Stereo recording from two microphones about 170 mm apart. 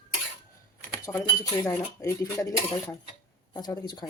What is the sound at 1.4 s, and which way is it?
Speech, 20° left (ahead or behind).